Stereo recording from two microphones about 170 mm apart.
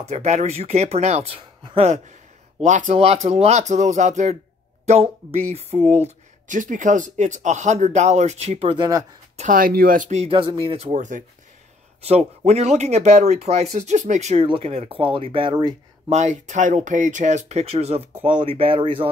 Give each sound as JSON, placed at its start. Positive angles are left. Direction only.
{"t": 0.0, "sound": "speech", "side_deg": -40}
{"t": 2.6, "sound": "speech", "side_deg": -45}
{"t": 9.4, "sound": "speech", "side_deg": -55}
{"t": 16.1, "sound": "speech", "side_deg": -45}